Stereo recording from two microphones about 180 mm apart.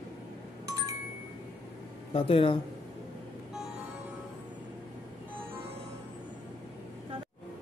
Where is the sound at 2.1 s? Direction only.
30° left (ahead or behind).